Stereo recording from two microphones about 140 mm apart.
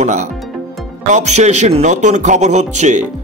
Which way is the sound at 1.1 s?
55° right (ahead or behind).